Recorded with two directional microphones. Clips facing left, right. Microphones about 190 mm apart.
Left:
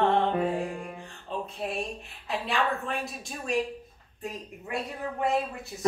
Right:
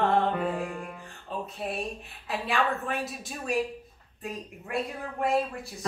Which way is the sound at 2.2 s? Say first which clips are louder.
Even; centre (ahead or behind).